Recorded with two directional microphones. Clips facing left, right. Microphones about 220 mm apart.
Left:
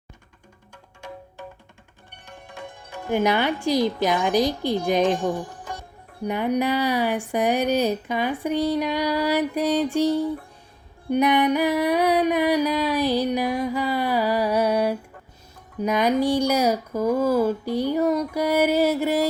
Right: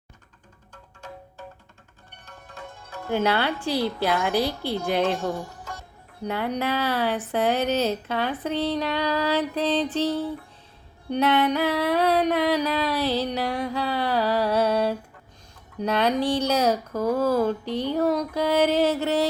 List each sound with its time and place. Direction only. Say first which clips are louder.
2.2 s speech: left 3 dB; 15° left (ahead or behind)